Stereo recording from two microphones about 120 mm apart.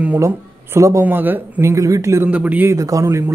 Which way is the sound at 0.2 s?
25° right (ahead or behind).